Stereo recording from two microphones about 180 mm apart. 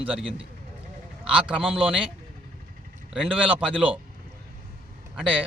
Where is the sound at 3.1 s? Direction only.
5° right (ahead or behind).